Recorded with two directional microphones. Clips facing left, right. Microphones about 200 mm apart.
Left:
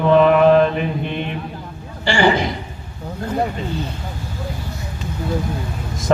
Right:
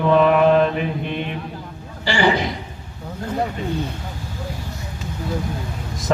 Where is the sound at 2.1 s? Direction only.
50° left (ahead or behind).